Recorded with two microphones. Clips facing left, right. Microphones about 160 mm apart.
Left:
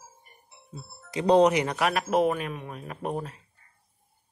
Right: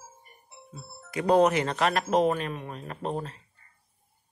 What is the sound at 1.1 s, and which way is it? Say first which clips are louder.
Speech: left 2 dB; 20° left (ahead or behind).